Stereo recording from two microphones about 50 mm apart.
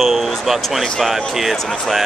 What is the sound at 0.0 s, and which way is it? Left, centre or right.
Speech, centre.